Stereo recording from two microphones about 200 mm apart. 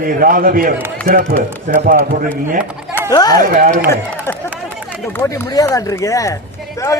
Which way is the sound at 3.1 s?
20° left (ahead or behind).